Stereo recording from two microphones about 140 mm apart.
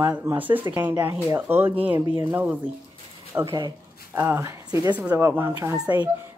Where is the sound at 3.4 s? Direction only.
30° right (ahead or behind).